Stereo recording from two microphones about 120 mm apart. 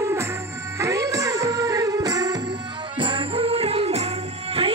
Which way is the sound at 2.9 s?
45° right (ahead or behind).